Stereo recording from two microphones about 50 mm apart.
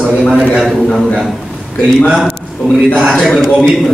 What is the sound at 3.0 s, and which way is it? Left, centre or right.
Speech, centre.